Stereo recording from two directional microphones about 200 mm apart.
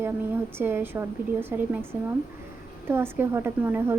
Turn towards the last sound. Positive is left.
turn(degrees=-10)  # may be behind; listen again after turning